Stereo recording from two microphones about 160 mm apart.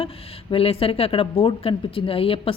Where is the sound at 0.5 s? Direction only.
35° left (ahead or behind).